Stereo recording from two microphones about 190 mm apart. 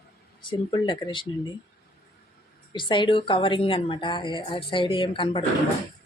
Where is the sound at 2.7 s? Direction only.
25° left (ahead or behind).